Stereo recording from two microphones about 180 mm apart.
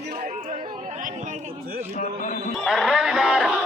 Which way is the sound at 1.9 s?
45° left (ahead or behind).